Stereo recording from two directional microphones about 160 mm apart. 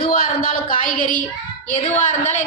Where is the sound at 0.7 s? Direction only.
60° left (ahead or behind).